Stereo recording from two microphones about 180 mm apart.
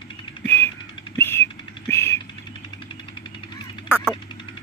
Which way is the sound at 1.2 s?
10° left (ahead or behind).